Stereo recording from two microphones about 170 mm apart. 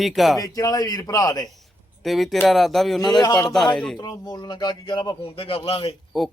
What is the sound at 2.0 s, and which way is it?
Speech, centre (ahead or behind).